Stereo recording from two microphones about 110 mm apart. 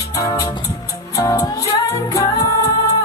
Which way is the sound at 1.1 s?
30° left (ahead or behind).